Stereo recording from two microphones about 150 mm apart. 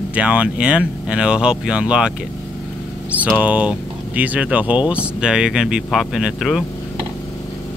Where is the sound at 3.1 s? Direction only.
10° right (ahead or behind).